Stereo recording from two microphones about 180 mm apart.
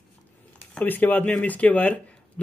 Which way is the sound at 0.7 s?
10° left (ahead or behind).